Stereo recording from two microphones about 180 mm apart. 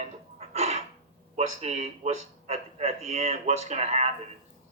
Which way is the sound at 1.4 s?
35° right (ahead or behind).